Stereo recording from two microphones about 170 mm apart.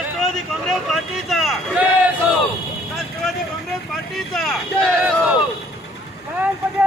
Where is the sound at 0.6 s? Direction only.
Centre (ahead or behind).